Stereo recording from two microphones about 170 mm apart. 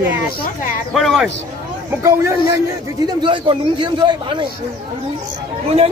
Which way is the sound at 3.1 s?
30° right (ahead or behind).